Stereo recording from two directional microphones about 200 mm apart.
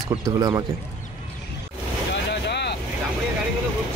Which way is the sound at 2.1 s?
60° left (ahead or behind).